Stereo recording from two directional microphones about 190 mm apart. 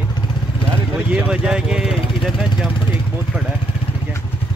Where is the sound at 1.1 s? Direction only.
5° right (ahead or behind).